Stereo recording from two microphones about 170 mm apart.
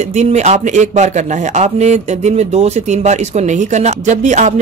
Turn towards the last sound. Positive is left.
turn(degrees=-45)  # may be behind; listen again after turning